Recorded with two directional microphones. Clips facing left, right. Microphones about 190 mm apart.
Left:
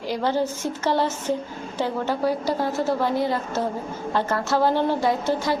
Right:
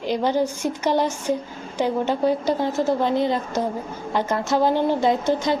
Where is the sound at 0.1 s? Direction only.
15° right (ahead or behind).